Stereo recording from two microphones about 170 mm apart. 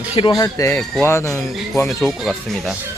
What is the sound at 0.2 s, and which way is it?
Speech, 25° left (ahead or behind).